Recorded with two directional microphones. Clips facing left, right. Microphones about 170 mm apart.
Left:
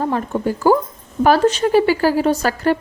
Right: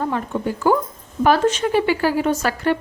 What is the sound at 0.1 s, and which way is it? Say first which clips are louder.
A woman's voice: left 3 dB; 35° left (ahead or behind).